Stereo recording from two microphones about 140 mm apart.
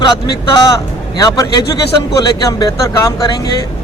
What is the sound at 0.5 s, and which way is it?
A man's voice, 25° left (ahead or behind).